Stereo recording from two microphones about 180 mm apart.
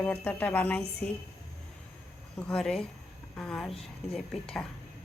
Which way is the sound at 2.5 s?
5° left (ahead or behind).